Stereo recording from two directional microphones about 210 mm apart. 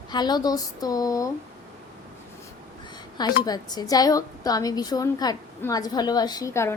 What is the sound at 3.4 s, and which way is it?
Speech, 20° left (ahead or behind).